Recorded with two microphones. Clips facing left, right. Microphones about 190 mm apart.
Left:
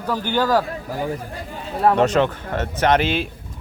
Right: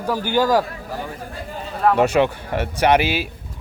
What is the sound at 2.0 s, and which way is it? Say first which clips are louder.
Speech: right 1 dB; 10° right (ahead or behind).